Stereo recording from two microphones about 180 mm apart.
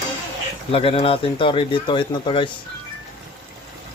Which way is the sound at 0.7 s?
30° left (ahead or behind).